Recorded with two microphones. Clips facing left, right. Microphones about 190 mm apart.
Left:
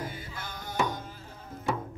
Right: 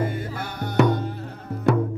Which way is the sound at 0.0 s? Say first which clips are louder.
Right 11 dB; 60° right (ahead or behind).